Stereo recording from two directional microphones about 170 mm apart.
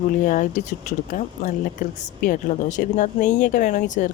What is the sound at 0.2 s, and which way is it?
Speech, 50° left (ahead or behind).